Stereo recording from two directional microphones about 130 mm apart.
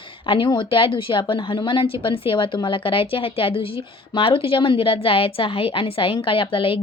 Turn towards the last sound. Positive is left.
turn(degrees=45)  # may be behind; listen again after turning